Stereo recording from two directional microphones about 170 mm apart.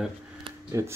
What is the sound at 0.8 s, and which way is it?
Speech, 20° right (ahead or behind).